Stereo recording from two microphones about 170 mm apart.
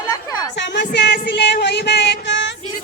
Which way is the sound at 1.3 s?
85° left.